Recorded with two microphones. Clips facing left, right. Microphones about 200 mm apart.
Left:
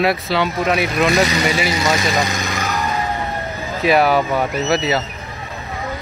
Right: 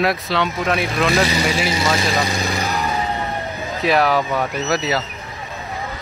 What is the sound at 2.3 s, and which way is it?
Vehicle, 30° right (ahead or behind).